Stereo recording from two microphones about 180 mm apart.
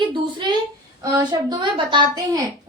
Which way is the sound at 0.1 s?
25° right (ahead or behind).